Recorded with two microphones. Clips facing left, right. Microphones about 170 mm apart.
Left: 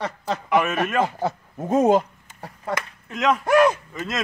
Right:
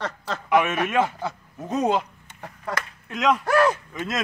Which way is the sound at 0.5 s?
Centre (ahead or behind).